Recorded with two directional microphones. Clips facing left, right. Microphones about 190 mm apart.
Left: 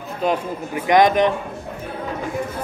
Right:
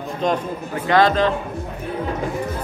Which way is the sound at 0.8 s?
15° left (ahead or behind).